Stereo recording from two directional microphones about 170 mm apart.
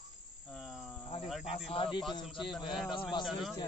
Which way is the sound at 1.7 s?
30° left (ahead or behind).